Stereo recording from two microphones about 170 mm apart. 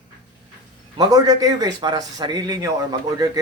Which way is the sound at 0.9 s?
20° right (ahead or behind).